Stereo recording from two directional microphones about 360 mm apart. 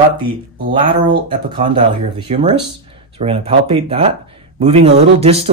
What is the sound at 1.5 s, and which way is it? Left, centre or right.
Speech, centre.